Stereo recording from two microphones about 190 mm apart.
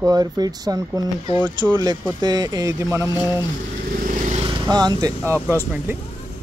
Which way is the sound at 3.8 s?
45° right (ahead or behind).